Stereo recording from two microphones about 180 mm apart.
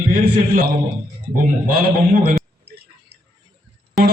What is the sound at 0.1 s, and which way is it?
A man's voice, 60° right (ahead or behind).